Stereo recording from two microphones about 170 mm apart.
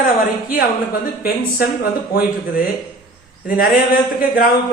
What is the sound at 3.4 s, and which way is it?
Speech, 55° left (ahead or behind).